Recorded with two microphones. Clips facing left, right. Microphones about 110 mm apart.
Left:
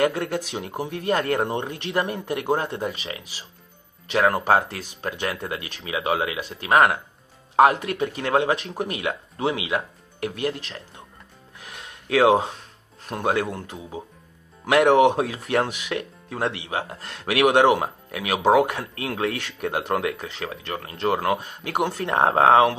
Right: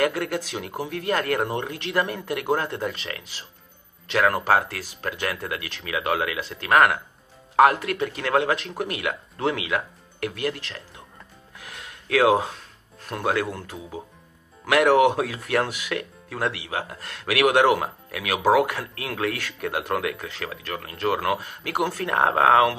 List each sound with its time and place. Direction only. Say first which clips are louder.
0.0 s speech: left 1 dB; 25° left (ahead or behind)
11.6 s a sound: left 1 dB; 30° left (ahead or behind)
13.1 s speech: left 1 dB; 25° left (ahead or behind)